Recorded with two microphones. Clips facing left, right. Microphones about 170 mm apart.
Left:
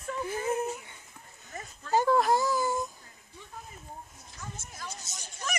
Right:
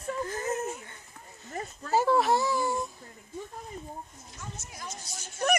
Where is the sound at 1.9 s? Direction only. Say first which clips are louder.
Even; 5° right (ahead or behind).